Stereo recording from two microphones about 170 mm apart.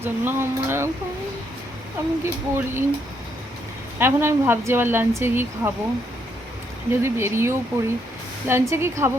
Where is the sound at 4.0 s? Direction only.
15° right (ahead or behind).